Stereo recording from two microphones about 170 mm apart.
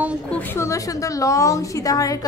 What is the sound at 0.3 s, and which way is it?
A woman's voice, 10° left (ahead or behind).